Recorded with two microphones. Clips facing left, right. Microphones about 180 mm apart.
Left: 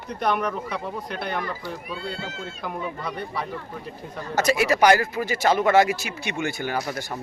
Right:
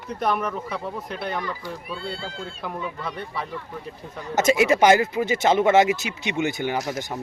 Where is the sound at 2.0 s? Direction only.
30° right (ahead or behind).